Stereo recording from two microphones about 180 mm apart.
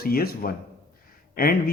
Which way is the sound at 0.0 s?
55° left (ahead or behind).